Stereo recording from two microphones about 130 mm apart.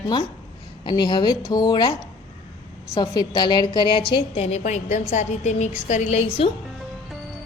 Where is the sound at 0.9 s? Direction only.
35° left (ahead or behind).